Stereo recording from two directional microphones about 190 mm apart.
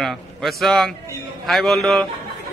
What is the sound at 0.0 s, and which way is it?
A man's voice, centre (ahead or behind).